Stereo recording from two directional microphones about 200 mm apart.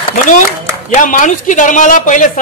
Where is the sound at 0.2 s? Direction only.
40° left (ahead or behind).